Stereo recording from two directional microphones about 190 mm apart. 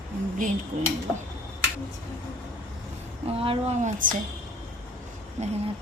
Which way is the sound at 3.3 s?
30° right (ahead or behind).